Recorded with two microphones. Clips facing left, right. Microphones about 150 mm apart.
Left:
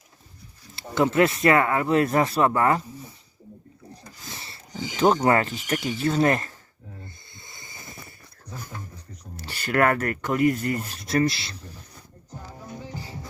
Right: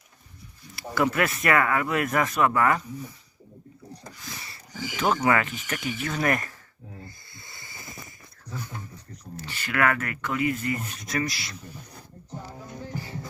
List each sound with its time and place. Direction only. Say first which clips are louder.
0.8 s speech: left 4 dB; 25° left (ahead or behind)
4.3 s a sound: left 4 dB; 25° left (ahead or behind)
5.2 s speech: left 3 dB; 35° left (ahead or behind)
7.0 s hiss: right 1 dB; 20° left (ahead or behind)
9.5 s speech: left 4 dB; 40° left (ahead or behind)
12.8 s music: right 5 dB; 15° left (ahead or behind)